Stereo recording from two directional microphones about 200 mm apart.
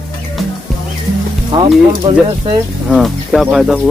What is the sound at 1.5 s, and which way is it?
Speech, 20° right (ahead or behind).